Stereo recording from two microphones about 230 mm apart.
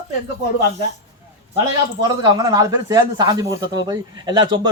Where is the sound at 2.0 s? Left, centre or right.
Centre.